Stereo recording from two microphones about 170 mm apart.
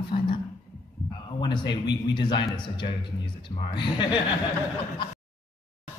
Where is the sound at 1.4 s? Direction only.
25° left (ahead or behind).